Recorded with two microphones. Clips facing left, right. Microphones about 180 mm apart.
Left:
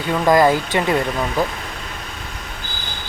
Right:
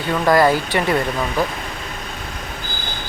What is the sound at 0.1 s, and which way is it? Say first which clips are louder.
Speech: left 1 dB; 15° left (ahead or behind).